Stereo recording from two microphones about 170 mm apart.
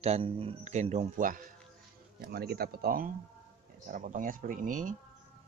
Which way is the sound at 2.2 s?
65° right (ahead or behind).